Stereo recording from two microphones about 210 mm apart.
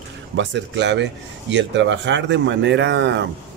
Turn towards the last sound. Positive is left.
turn(degrees=-55)  # may be behind; listen again after turning